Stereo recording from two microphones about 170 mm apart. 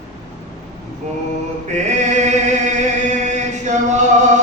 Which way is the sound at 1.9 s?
40° right (ahead or behind).